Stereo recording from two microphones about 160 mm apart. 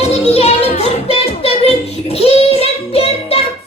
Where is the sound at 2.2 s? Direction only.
40° left (ahead or behind).